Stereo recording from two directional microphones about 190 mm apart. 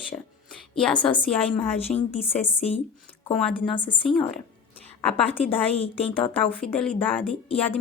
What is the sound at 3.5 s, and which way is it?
Speech, 25° left (ahead or behind).